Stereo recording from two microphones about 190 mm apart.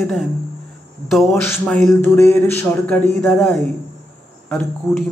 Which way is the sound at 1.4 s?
10° left (ahead or behind).